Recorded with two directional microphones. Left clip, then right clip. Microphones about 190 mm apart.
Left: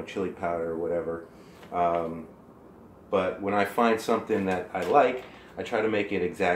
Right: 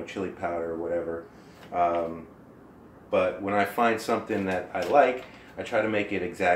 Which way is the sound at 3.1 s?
20° left (ahead or behind).